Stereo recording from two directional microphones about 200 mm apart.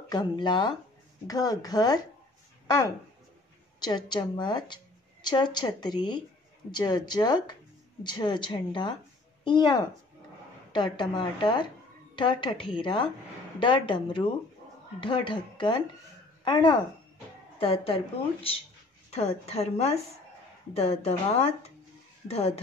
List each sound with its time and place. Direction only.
0.1 s a woman's voice: 20° left (ahead or behind)
3.8 s a woman's voice: 20° left (ahead or behind)